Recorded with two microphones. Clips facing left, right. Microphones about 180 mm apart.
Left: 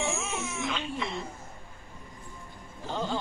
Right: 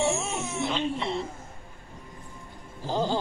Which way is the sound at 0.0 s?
40° right (ahead or behind).